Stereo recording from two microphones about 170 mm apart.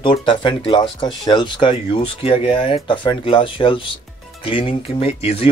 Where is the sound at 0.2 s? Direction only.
30° left (ahead or behind).